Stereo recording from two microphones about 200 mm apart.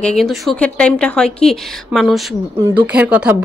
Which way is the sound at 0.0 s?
Centre (ahead or behind).